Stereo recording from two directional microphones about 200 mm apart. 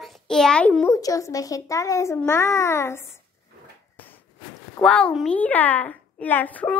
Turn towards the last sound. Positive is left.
turn(degrees=5)  # may be behind; listen again after turning